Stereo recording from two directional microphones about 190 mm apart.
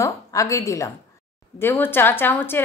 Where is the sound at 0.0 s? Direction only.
15° left (ahead or behind).